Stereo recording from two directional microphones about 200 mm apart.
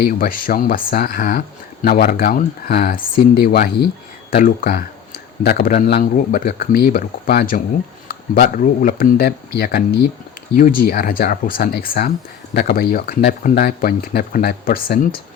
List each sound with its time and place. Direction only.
0.0 s speech: 45° left (ahead or behind)